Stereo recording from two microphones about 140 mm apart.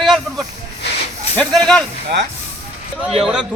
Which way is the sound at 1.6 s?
5° left (ahead or behind).